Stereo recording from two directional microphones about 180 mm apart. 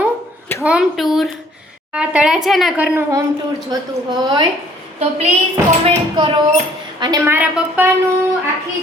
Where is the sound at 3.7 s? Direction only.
25° right (ahead or behind).